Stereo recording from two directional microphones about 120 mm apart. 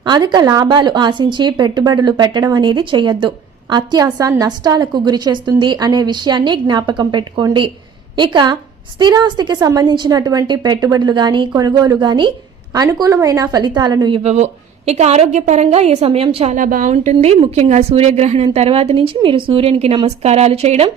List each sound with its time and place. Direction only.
0.0 s a woman's voice: 35° right (ahead or behind)
14.3 s a woman's voice: 65° right (ahead or behind)